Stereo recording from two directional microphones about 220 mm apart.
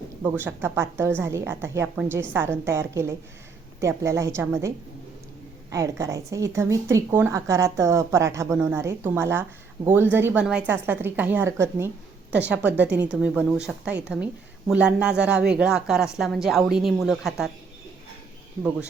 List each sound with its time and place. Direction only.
0.2 s a woman's voice: 10° right (ahead or behind)
5.7 s a woman's voice: 15° right (ahead or behind)